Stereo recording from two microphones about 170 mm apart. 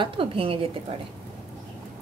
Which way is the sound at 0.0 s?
30° right (ahead or behind).